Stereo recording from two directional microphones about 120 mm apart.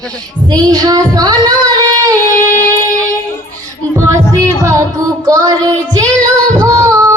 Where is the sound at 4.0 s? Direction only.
30° right (ahead or behind).